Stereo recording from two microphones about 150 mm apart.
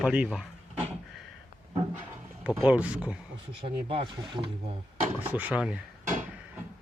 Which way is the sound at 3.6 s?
35° right (ahead or behind).